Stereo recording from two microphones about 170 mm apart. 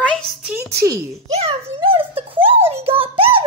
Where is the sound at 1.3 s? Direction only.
35° right (ahead or behind).